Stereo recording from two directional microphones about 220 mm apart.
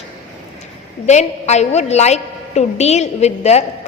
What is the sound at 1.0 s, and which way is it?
A woman's voice, 30° left (ahead or behind).